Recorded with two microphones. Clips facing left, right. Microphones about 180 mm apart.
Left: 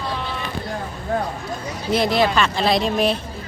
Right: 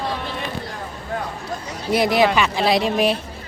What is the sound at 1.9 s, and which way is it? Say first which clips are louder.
Speech: right 1 dB; 15° right (ahead or behind).